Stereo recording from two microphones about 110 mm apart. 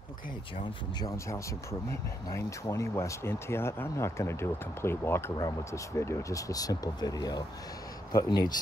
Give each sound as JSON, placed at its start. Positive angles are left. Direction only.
{"t": 1.1, "sound": "speech", "side_deg": 25}